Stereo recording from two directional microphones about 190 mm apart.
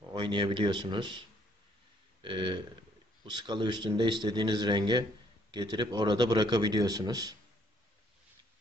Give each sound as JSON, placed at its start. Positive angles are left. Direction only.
{"t": 0.1, "sound": "a man's voice", "side_deg": -25}
{"t": 2.2, "sound": "a man's voice", "side_deg": -25}